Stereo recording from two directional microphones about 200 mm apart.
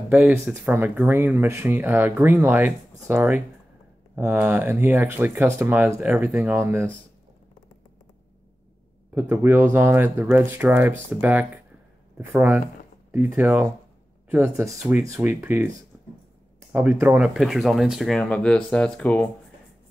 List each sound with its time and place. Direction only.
0.1 s speech: 5° right (ahead or behind)
9.1 s speech: 10° right (ahead or behind)
15.0 s speech: 15° right (ahead or behind)
16.7 s speech: 10° right (ahead or behind); by 19.2 s 5° left (ahead or behind)